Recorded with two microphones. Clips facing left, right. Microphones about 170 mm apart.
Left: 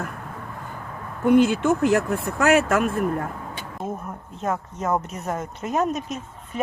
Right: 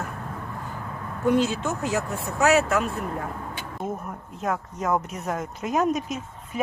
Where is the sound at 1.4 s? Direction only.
55° left (ahead or behind).